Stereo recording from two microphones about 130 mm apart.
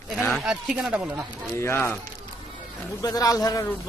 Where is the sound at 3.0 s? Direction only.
30° left (ahead or behind).